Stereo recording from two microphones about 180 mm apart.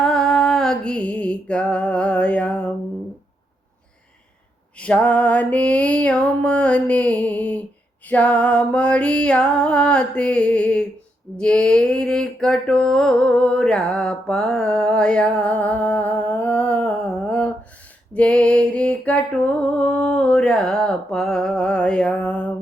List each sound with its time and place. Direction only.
0.0 s music: 5° left (ahead or behind)
4.8 s music: 5° left (ahead or behind)
11.3 s mantra: 5° left (ahead or behind)
18.1 s music: 5° left (ahead or behind)